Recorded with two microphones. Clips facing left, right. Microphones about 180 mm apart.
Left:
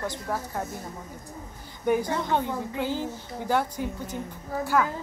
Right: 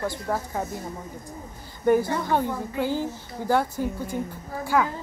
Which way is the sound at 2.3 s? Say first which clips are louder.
Right 4 dB; 10° right (ahead or behind).